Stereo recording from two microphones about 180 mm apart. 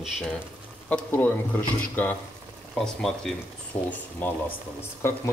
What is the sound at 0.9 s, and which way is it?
A man's voice, 10° left (ahead or behind).